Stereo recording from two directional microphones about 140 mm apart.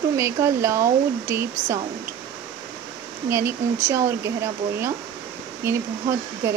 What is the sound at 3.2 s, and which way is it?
Speech, 20° right (ahead or behind).